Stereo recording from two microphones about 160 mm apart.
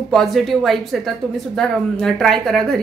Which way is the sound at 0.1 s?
Centre (ahead or behind).